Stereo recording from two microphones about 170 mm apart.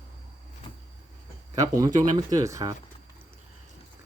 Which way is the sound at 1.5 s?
20° right (ahead or behind).